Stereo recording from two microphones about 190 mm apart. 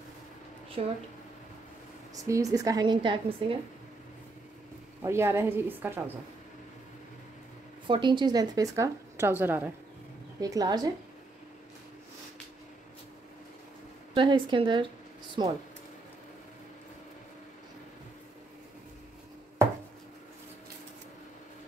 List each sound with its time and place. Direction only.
0.8 s speech: 35° right (ahead or behind)
2.1 s a woman's voice: 15° right (ahead or behind)
5.0 s a woman's voice: 15° right (ahead or behind)
7.8 s speech: 25° right (ahead or behind)
14.1 s speech: 25° right (ahead or behind)